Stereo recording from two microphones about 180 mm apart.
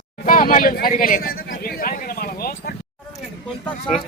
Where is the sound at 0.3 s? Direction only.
50° left (ahead or behind).